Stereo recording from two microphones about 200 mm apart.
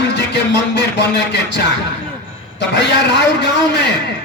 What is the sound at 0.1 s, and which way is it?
A man's voice, 60° left (ahead or behind).